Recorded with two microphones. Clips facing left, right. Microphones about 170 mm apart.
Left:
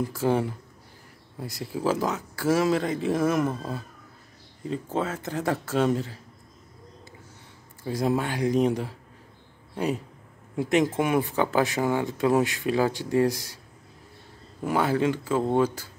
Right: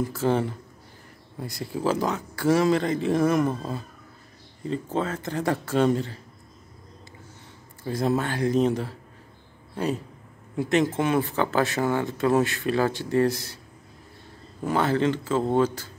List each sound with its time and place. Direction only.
0.1 s speech: 10° left (ahead or behind)
7.8 s speech: 10° left (ahead or behind)
14.6 s speech: 10° left (ahead or behind)